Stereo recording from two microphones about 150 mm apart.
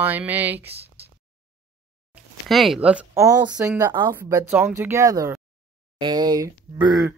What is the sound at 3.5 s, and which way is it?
Speech, 10° right (ahead or behind).